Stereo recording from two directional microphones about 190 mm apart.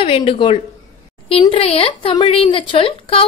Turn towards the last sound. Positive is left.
turn(degrees=30)  # may be behind; listen again after turning